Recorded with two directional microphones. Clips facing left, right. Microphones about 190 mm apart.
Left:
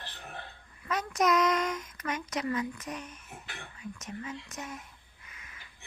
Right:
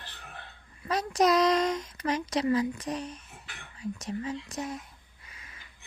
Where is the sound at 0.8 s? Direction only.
35° right (ahead or behind).